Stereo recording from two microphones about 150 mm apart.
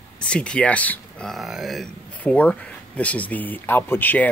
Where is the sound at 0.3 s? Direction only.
5° left (ahead or behind).